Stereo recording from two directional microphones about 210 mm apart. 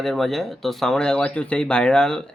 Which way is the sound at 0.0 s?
Centre (ahead or behind).